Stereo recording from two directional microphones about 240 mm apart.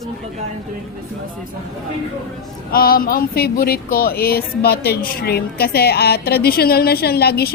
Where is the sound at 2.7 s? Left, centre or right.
Left.